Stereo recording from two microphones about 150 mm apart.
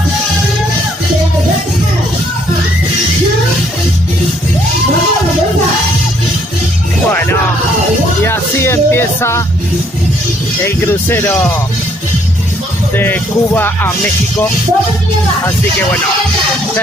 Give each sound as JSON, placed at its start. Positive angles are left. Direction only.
{"t": 7.1, "sound": "music", "side_deg": 15}
{"t": 10.6, "sound": "music", "side_deg": 15}
{"t": 12.9, "sound": "music", "side_deg": 15}